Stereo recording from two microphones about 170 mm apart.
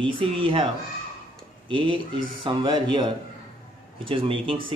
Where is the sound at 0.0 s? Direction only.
30° right (ahead or behind).